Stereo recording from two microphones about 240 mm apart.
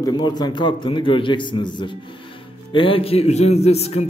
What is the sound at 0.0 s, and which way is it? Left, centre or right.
A man's voice, centre.